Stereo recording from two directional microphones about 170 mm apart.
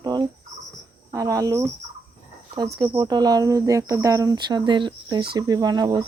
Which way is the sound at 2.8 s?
25° right (ahead or behind).